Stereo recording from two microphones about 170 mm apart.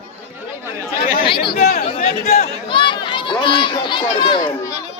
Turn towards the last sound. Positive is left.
turn(degrees=30)  # may be behind; listen again after turning